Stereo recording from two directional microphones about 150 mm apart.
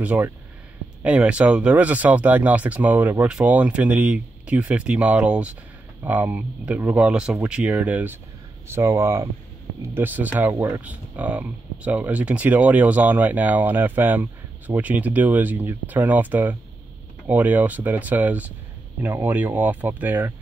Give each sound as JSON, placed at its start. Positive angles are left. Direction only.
{"t": 0.0, "sound": "speech", "side_deg": -10}